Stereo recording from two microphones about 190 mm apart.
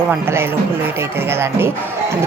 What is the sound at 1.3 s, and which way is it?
Speech, 15° right (ahead or behind).